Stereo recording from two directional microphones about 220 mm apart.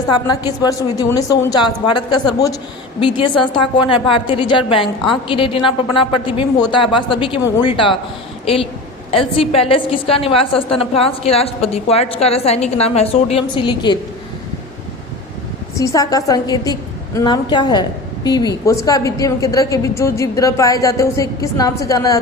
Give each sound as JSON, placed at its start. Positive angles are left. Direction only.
{"t": 0.3, "sound": "a woman's voice", "side_deg": 20}
{"t": 9.1, "sound": "a woman's voice", "side_deg": 25}
{"t": 15.8, "sound": "a woman's voice", "side_deg": 15}